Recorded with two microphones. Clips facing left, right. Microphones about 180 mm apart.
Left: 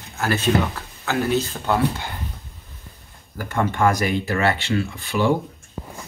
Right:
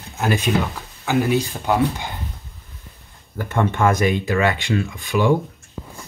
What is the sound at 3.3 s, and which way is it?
Speech, 25° right (ahead or behind).